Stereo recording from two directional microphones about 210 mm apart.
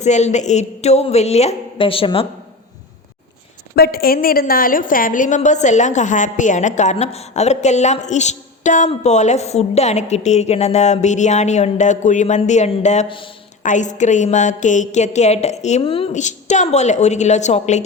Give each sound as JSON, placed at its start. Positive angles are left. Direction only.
{"t": 0.0, "sound": "a woman's voice", "side_deg": 35}
{"t": 3.8, "sound": "a woman's voice", "side_deg": 45}
{"t": 13.6, "sound": "a woman's voice", "side_deg": 35}